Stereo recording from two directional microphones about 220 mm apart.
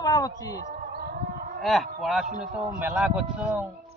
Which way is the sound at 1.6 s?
Centre (ahead or behind).